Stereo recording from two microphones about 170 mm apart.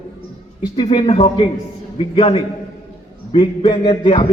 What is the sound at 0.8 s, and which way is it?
A man's voice, 30° left (ahead or behind).